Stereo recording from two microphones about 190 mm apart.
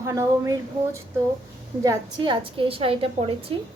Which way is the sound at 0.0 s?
15° right (ahead or behind).